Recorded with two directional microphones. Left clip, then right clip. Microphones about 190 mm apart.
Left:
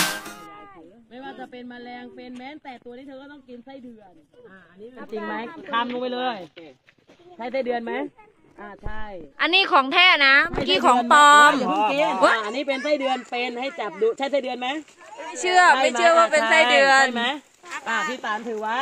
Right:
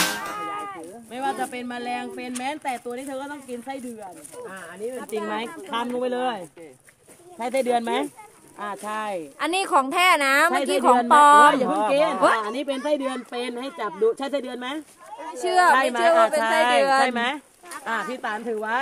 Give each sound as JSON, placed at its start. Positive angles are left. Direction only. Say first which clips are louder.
{"t": 0.5, "sound": "a sound", "louder": "right 12 dB", "side_deg": -90}
{"t": 1.4, "sound": "speech", "louder": "right 9 dB", "side_deg": -35}
{"t": 5.1, "sound": "speech", "louder": "left 1 dB", "side_deg": -40}
{"t": 7.3, "sound": "speech", "louder": "right 3 dB", "side_deg": -50}
{"t": 9.4, "sound": "a woman's voice", "louder": "left 4 dB", "side_deg": -10}
{"t": 15.3, "sound": "a woman's voice", "louder": "left 2 dB", "side_deg": 5}